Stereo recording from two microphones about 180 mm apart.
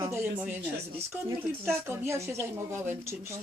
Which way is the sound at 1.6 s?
10° right (ahead or behind).